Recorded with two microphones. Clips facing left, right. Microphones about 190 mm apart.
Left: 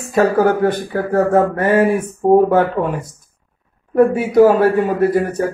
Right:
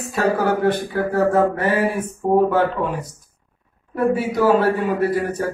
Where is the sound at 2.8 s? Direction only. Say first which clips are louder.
Left 4 dB; 50° left (ahead or behind).